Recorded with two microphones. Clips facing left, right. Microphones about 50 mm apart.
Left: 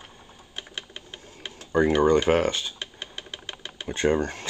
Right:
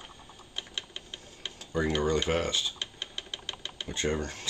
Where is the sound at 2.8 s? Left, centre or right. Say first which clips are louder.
Left 2 dB; centre.